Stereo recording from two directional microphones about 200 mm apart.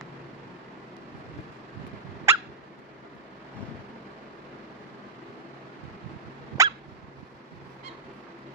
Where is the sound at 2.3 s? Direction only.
10° right (ahead or behind).